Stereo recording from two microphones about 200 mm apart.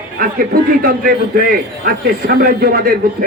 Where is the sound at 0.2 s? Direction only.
45° right (ahead or behind).